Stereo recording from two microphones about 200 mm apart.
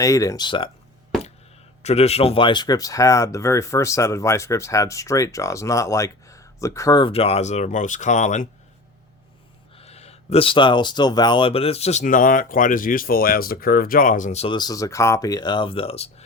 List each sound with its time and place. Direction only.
0.0 s speech: 15° left (ahead or behind)
1.8 s speech: 30° left (ahead or behind)
9.7 s speech: 30° left (ahead or behind)